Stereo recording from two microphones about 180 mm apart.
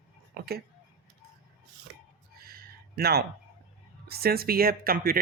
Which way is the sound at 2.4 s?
55° right (ahead or behind).